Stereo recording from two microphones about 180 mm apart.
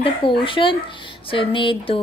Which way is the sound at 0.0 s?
30° left (ahead or behind).